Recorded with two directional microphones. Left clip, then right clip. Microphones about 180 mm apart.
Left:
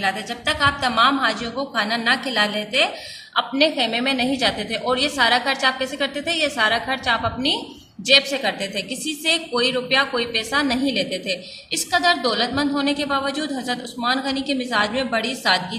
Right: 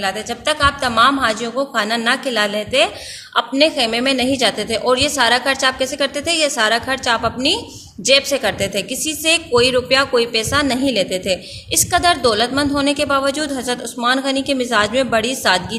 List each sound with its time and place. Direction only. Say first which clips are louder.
0.0 s a woman's voice: right 2 dB; 55° right (ahead or behind)